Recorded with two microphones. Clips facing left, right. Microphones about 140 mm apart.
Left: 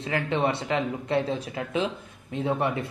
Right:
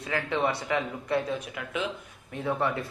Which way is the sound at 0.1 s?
20° left (ahead or behind).